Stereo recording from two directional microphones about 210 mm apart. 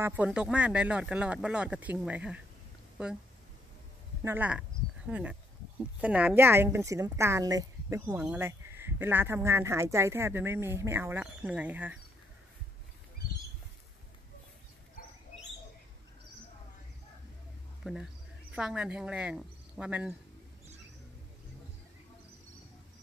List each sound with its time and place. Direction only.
0.0 s speech: 10° right (ahead or behind)
4.2 s a woman's voice: 10° right (ahead or behind)
15.0 s dog: 40° left (ahead or behind)
17.8 s speech: centre (ahead or behind)